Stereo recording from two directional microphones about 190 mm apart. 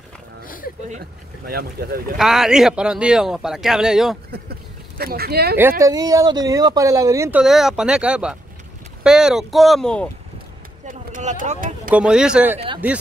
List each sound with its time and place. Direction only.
0.8 s speech: 45° right (ahead or behind)
2.1 s speech: centre (ahead or behind)
4.3 s speech: 55° right (ahead or behind)
5.6 s speech: 15° right (ahead or behind); by 10.0 s 5° left (ahead or behind)
10.9 s a sound: 45° right (ahead or behind)
11.9 s speech: 5° right (ahead or behind)
12.5 s speech: 25° right (ahead or behind)